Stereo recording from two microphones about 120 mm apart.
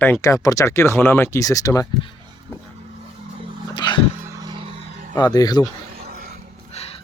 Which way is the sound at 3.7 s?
40° left (ahead or behind).